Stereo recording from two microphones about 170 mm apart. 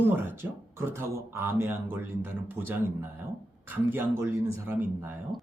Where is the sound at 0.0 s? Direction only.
10° right (ahead or behind).